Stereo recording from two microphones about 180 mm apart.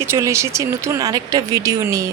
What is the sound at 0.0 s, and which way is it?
Speech, 15° right (ahead or behind).